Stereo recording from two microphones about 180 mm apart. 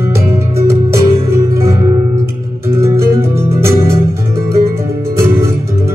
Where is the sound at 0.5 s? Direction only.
15° right (ahead or behind).